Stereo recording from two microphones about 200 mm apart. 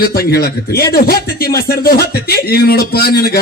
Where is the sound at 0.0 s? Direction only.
50° left (ahead or behind).